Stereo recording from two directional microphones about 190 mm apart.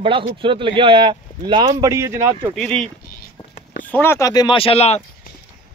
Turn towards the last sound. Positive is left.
turn(degrees=30)  # may be behind; listen again after turning